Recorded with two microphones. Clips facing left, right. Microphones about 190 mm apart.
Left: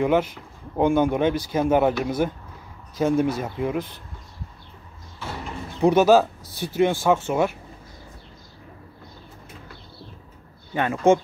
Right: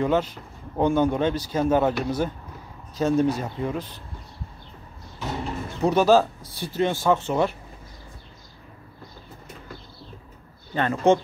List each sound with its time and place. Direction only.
0.0 s speech: 15° left (ahead or behind)
5.2 s a sound: 15° right (ahead or behind)
5.8 s speech: 15° left (ahead or behind)
10.7 s speech: 10° left (ahead or behind)